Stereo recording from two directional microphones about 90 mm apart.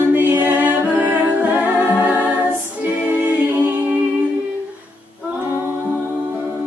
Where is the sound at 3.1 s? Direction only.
20° right (ahead or behind).